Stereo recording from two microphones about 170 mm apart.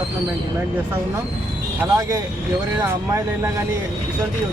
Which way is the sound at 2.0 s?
20° right (ahead or behind).